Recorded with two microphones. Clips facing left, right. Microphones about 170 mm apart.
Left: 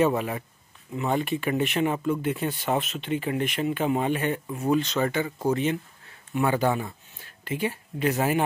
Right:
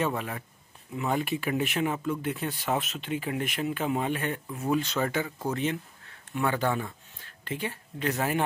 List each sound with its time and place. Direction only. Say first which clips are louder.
0.1 s speech: left 6 dB; 10° left (ahead or behind)
0.9 s speech: left 3 dB; 5° right (ahead or behind)